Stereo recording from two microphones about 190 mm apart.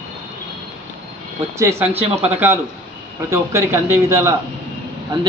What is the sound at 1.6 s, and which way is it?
A man's voice, 15° right (ahead or behind).